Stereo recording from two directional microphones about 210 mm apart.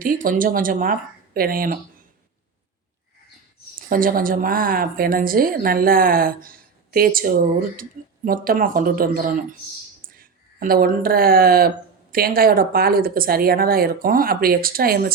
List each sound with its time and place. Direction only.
0.0 s speech: 40° right (ahead or behind)
3.8 s a woman's voice: 40° right (ahead or behind)
10.6 s a woman's voice: 40° right (ahead or behind)